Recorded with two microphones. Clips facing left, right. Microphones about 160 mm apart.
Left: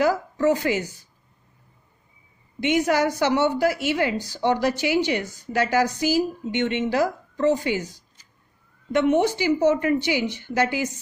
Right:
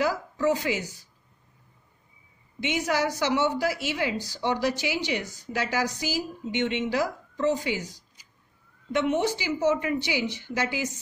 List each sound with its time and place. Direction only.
0.0 s a woman's voice: 50° left (ahead or behind)
2.6 s a woman's voice: 55° left (ahead or behind)
8.9 s a woman's voice: 55° left (ahead or behind)